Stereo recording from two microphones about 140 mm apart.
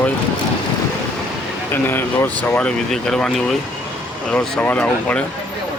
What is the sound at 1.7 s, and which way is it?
Speech, 15° left (ahead or behind).